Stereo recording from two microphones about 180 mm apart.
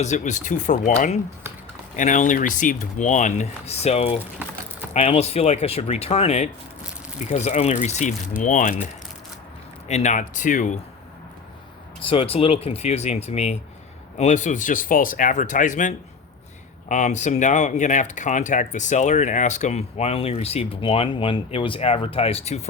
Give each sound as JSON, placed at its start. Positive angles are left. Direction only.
{"t": 0.0, "sound": "speech", "side_deg": 40}
{"t": 9.9, "sound": "speech", "side_deg": 40}
{"t": 12.0, "sound": "speech", "side_deg": 30}